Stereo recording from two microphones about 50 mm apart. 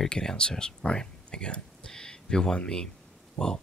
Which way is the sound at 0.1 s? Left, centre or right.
Centre.